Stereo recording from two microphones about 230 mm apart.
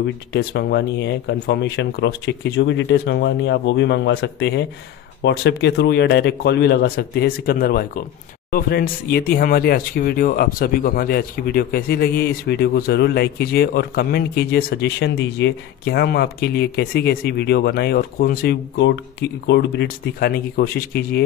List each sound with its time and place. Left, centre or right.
0.0 s speech: left